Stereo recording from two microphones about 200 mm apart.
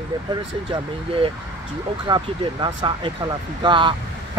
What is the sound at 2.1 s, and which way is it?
Speech, 25° right (ahead or behind).